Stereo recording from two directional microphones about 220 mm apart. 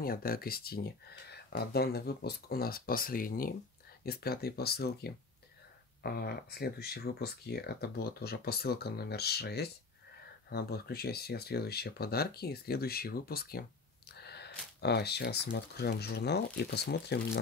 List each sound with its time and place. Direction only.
0.0 s speech: 40° left (ahead or behind)
14.1 s a sound: 50° left (ahead or behind)
14.8 s speech: 50° left (ahead or behind)